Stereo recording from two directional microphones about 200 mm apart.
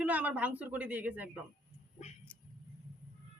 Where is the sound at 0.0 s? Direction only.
5° right (ahead or behind).